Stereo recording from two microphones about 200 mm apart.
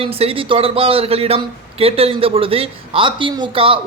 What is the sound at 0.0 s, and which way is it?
A man's voice, 30° right (ahead or behind).